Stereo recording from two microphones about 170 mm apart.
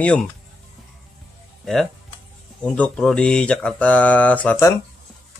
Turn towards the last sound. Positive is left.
turn(degrees=10)  # may be behind; listen again after turning